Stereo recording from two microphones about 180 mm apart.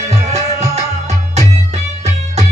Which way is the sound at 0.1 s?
35° right (ahead or behind).